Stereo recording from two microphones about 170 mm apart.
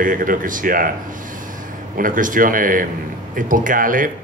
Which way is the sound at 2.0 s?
50° right (ahead or behind).